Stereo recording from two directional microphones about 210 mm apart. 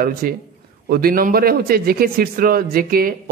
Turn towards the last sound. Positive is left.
turn(degrees=-45)  # may be behind; listen again after turning